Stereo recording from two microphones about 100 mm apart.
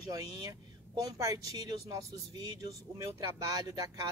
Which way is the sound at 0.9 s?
35° right (ahead or behind).